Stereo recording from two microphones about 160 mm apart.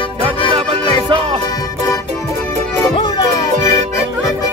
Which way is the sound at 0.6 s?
35° right (ahead or behind).